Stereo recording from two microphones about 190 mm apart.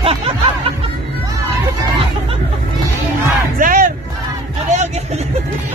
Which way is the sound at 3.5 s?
45° right (ahead or behind).